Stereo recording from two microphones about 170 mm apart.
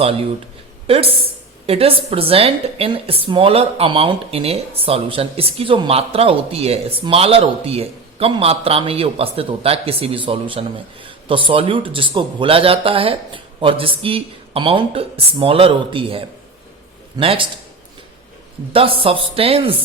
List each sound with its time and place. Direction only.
0.9 s a woman's voice: 35° right (ahead or behind)
18.7 s a woman's voice: 30° right (ahead or behind)